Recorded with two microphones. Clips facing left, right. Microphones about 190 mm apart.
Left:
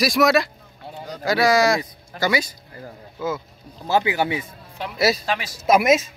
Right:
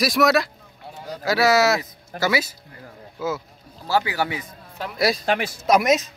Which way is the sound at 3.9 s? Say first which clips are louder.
Left 2 dB; 20° left (ahead or behind).